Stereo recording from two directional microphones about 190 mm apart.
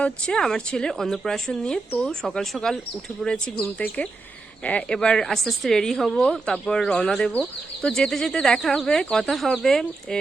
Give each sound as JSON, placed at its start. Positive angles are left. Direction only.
{"t": 0.0, "sound": "a woman's voice", "side_deg": 5}